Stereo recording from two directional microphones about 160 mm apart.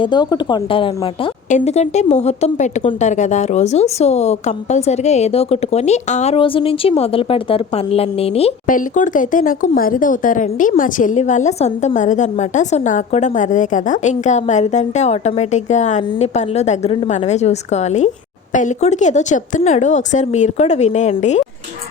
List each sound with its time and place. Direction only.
0.0 s speech: 30° left (ahead or behind)
1.5 s speech: 45° left (ahead or behind)
8.6 s speech: 55° left (ahead or behind)